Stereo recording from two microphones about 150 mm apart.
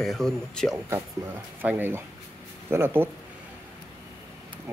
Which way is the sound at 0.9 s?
10° right (ahead or behind).